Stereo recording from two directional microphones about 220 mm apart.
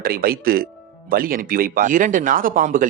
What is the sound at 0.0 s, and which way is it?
Speech, 40° right (ahead or behind).